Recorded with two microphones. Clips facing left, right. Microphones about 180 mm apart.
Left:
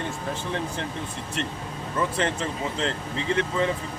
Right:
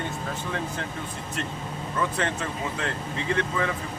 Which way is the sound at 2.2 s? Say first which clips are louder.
Left 2 dB; 25° left (ahead or behind).